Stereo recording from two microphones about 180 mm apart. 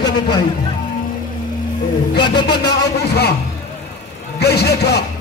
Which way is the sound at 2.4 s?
65° left (ahead or behind).